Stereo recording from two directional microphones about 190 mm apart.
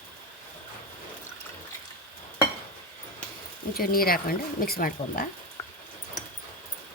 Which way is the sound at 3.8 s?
50° left (ahead or behind).